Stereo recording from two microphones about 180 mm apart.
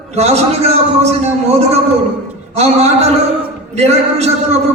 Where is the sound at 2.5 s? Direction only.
35° right (ahead or behind).